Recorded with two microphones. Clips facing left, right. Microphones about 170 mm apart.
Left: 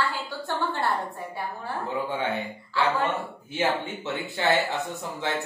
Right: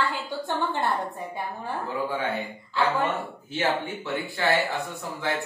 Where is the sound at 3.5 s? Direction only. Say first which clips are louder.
Even; 20° left (ahead or behind).